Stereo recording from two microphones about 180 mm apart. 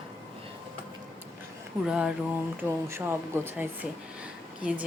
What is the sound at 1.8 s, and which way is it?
Speech, 5° right (ahead or behind).